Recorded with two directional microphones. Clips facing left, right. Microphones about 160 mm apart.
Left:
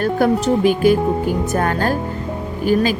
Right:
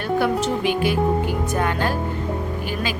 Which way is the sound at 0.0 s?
40° left (ahead or behind).